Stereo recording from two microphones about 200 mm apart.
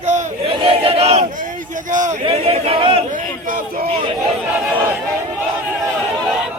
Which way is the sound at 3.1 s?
40° right (ahead or behind).